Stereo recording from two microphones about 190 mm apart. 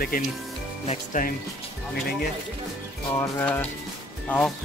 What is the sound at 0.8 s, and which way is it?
Speech, 45° left (ahead or behind).